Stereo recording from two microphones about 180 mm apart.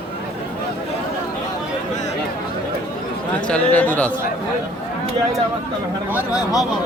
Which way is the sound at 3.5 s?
10° left (ahead or behind).